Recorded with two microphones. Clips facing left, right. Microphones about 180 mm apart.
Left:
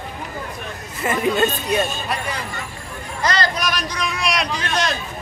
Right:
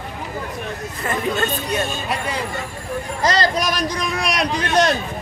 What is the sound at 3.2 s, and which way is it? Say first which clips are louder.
A man's voice: right 2 dB; 35° right (ahead or behind).